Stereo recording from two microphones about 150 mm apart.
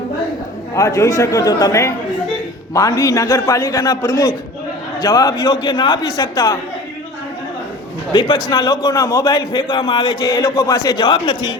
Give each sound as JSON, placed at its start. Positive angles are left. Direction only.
{"t": 0.8, "sound": "a man's voice", "side_deg": 20}
{"t": 8.1, "sound": "a man's voice", "side_deg": 30}